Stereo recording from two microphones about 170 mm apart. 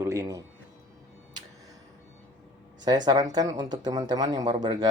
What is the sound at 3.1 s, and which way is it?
Speech, 20° right (ahead or behind).